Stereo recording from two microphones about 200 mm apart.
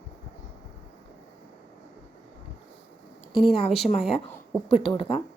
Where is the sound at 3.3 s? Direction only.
30° left (ahead or behind).